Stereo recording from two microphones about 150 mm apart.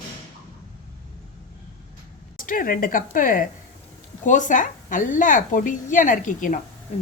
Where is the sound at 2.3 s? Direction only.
70° left (ahead or behind).